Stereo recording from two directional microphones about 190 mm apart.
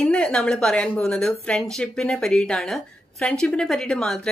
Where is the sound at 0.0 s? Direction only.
5° left (ahead or behind).